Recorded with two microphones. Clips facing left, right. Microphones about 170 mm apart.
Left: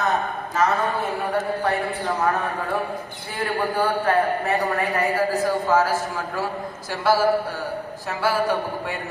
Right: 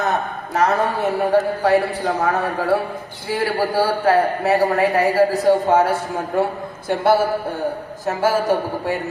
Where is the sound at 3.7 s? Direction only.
80° right.